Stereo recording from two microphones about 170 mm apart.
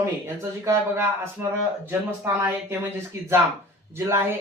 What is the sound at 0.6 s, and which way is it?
Speech, 15° right (ahead or behind).